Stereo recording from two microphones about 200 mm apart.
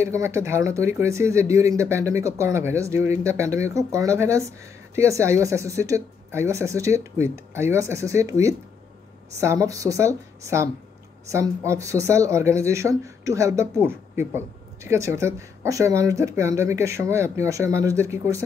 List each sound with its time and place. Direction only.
0.0 s speech: 15° right (ahead or behind)